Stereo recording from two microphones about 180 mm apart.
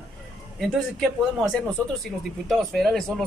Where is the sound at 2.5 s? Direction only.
Centre (ahead or behind).